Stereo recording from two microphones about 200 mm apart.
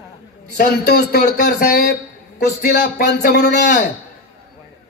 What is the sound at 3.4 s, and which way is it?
Speech, 40° left (ahead or behind).